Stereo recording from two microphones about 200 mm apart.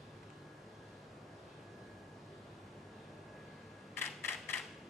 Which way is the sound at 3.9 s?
10° left (ahead or behind).